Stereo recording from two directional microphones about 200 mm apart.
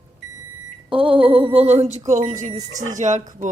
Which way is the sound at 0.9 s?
25° right (ahead or behind).